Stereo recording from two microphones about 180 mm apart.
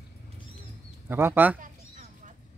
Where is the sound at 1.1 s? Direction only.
10° right (ahead or behind).